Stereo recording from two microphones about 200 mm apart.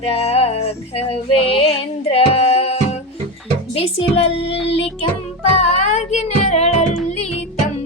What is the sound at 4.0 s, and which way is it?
Music, 30° left (ahead or behind).